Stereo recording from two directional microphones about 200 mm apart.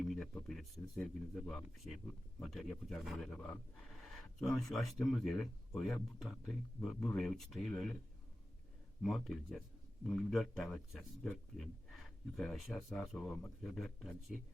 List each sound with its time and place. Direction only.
0.0 s speech: centre (ahead or behind)
9.0 s speech: centre (ahead or behind)